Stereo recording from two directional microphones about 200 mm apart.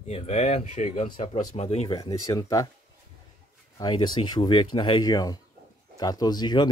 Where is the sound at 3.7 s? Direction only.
20° left (ahead or behind).